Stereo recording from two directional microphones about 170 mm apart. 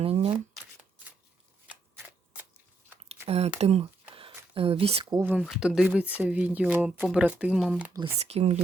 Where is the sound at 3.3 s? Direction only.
40° right (ahead or behind).